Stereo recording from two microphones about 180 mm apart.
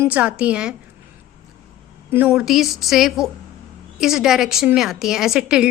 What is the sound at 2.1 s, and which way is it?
A woman's voice, 10° right (ahead or behind).